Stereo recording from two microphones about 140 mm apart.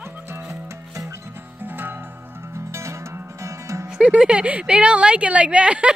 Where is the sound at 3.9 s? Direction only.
5° right (ahead or behind).